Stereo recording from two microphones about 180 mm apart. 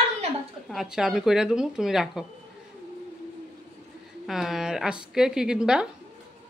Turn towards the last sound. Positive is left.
turn(degrees=-5)  # may be behind; listen again after turning